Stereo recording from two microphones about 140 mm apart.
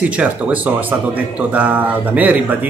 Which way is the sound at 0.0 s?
10° right (ahead or behind).